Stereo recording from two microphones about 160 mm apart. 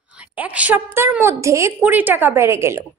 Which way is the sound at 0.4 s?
10° right (ahead or behind).